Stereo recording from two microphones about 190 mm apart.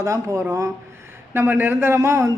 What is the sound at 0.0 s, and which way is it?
A man's voice, 15° right (ahead or behind).